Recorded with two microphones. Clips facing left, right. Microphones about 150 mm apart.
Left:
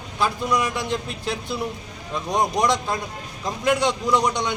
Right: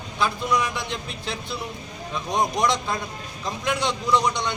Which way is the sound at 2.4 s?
10° left (ahead or behind).